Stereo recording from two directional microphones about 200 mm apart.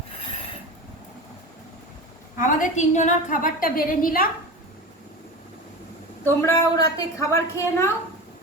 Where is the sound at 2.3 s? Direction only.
40° left (ahead or behind).